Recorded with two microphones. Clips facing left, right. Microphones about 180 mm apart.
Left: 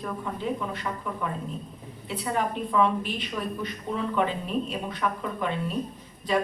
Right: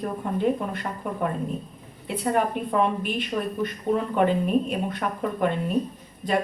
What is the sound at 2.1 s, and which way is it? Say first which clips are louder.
A woman's voice: right 4 dB; 50° right (ahead or behind).